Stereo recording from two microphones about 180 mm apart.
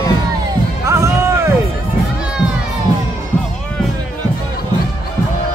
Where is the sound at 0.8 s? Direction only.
15° right (ahead or behind).